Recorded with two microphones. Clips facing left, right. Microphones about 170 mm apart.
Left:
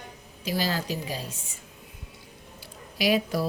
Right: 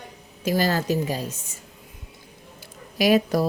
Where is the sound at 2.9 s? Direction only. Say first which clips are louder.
Right 5 dB; 50° right (ahead or behind).